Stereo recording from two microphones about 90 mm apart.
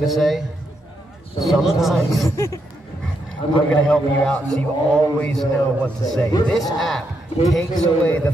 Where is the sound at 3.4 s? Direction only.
80° left.